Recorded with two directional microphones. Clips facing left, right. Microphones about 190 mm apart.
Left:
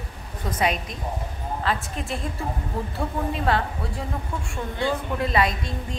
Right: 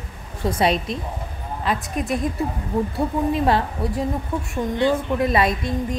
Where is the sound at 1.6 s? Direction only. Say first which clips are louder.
Right 5 dB; 15° right (ahead or behind).